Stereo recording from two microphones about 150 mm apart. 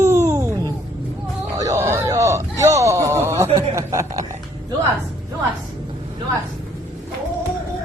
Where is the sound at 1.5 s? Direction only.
20° right (ahead or behind).